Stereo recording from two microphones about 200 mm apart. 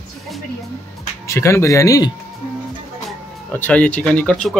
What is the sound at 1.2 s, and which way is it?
Speech, 15° left (ahead or behind).